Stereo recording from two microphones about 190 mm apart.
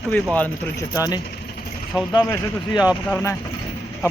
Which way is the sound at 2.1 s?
20° left (ahead or behind).